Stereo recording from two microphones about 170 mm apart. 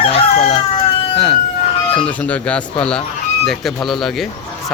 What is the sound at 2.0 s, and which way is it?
Speech, 10° left (ahead or behind).